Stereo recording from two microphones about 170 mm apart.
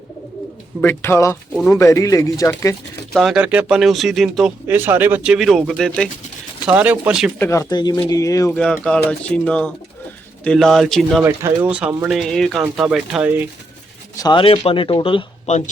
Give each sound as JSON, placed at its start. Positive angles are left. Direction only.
{"t": 0.8, "sound": "speech", "side_deg": 10}
{"t": 1.5, "sound": "speech", "side_deg": 0}
{"t": 1.8, "sound": "speech", "side_deg": 20}
{"t": 3.1, "sound": "speech", "side_deg": 0}
{"t": 4.7, "sound": "speech", "side_deg": -10}
{"t": 7.3, "sound": "speech", "side_deg": 15}
{"t": 8.5, "sound": "speech", "side_deg": 5}
{"t": 11.2, "sound": "speech", "side_deg": -10}
{"t": 14.2, "sound": "speech", "side_deg": 25}
{"t": 15.4, "sound": "speech", "side_deg": 45}